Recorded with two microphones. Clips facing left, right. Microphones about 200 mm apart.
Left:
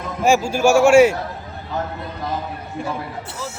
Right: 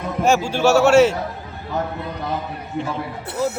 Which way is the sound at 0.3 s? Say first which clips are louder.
Left 1 dB; 10° left (ahead or behind).